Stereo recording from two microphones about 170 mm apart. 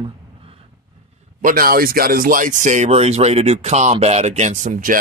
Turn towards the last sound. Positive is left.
turn(degrees=-50)  # may be behind; listen again after turning